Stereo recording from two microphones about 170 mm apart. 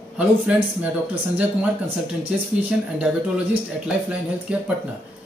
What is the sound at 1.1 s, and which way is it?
Speech, 10° right (ahead or behind).